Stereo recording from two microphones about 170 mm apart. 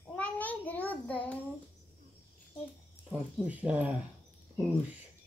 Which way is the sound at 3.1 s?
5° right (ahead or behind).